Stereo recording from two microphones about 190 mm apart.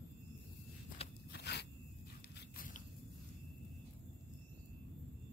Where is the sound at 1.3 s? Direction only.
60° left (ahead or behind).